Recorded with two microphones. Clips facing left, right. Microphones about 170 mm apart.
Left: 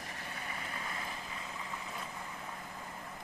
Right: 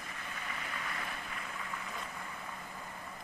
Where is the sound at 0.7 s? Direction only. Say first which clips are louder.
Right 1 dB; 25° left (ahead or behind).